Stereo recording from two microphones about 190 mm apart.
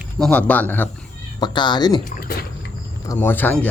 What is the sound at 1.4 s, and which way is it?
Speech, 25° left (ahead or behind).